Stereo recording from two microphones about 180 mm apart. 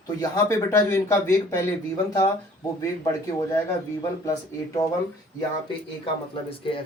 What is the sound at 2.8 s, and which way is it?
Speech, 15° left (ahead or behind).